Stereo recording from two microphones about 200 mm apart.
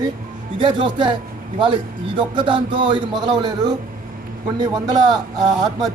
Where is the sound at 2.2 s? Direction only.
25° right (ahead or behind).